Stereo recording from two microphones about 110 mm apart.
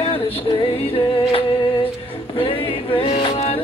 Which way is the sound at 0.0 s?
60° left (ahead or behind).